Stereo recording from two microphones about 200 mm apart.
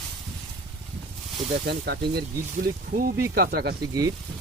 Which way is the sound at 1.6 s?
55° right (ahead or behind).